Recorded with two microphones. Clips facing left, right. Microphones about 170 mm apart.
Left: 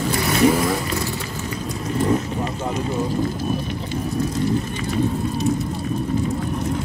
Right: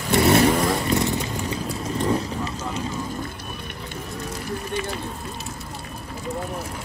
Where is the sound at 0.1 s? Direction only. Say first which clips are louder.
Right 5 dB; 25° right (ahead or behind).